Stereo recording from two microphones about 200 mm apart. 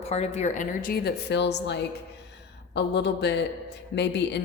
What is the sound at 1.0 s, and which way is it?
A woman's voice, 55° left (ahead or behind).